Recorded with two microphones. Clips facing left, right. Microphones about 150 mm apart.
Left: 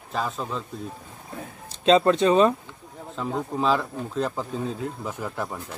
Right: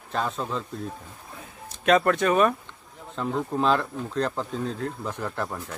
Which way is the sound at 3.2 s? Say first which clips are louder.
Right 1 dB; centre (ahead or behind).